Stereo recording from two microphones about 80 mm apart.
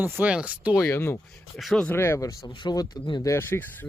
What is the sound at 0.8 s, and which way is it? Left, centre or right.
Speech, left.